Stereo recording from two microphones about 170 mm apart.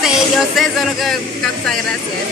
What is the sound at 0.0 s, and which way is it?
Music, centre (ahead or behind).